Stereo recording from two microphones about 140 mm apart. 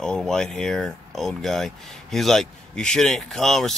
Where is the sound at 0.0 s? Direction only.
5° left (ahead or behind).